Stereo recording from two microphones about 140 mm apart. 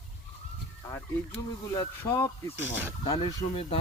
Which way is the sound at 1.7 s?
25° left (ahead or behind).